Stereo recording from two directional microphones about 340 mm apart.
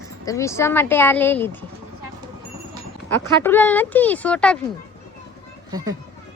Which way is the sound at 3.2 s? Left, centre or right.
Centre.